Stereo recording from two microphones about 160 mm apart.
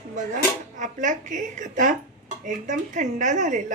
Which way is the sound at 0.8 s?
50° right (ahead or behind).